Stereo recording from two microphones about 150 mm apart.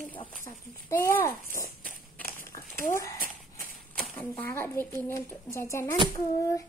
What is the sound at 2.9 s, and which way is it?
A child's voice, 20° left (ahead or behind).